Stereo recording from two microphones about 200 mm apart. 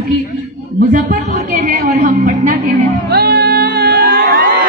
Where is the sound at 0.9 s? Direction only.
35° right (ahead or behind).